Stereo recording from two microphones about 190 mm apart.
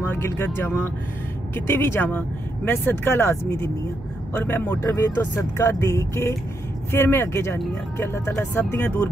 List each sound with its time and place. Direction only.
0.0 s speech: 10° left (ahead or behind)